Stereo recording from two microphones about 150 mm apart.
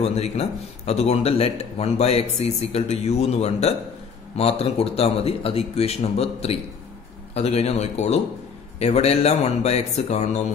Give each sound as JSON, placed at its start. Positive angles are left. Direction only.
{"t": 0.0, "sound": "speech", "side_deg": 45}